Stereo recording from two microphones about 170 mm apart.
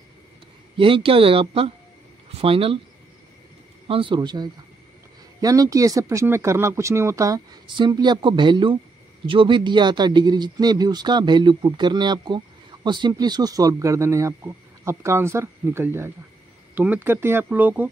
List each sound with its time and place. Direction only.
0.7 s speech: 30° right (ahead or behind)
3.8 s speech: 30° right (ahead or behind); by 17.8 s 10° right (ahead or behind)